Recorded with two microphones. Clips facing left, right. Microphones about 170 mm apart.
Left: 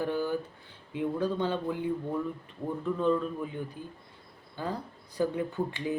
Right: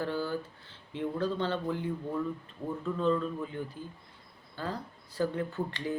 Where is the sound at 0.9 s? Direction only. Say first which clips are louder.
Left 2 dB; 15° left (ahead or behind).